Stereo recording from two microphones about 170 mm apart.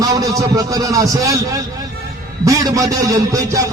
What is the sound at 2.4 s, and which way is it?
A man's voice, 20° right (ahead or behind).